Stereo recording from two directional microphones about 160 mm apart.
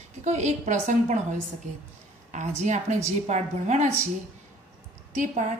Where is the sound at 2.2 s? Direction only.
50° right (ahead or behind).